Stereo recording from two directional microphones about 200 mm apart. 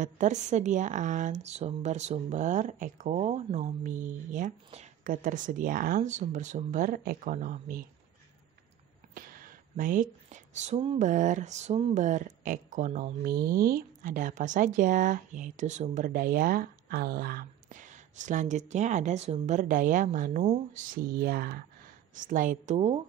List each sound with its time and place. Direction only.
0.0 s speech: 35° right (ahead or behind)
9.1 s speech: 45° right (ahead or behind)